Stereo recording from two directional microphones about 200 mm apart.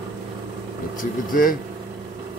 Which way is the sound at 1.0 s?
45° left (ahead or behind).